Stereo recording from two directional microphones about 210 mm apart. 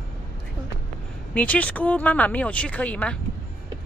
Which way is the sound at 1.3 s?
5° left (ahead or behind).